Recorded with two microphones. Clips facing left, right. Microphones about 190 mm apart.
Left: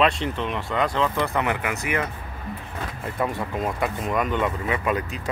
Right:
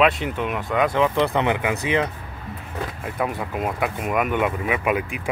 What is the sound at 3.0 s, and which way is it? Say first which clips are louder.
Speech: left 1 dB; 5° right (ahead or behind).